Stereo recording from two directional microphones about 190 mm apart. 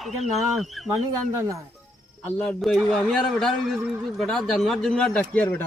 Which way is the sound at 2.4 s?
5° left (ahead or behind).